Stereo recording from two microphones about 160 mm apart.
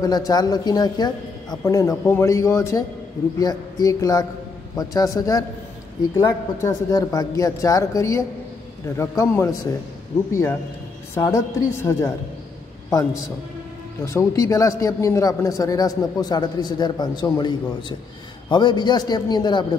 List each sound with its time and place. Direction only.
0.0 s a man's voice: 25° left (ahead or behind)
11.1 s a man's voice: 20° left (ahead or behind)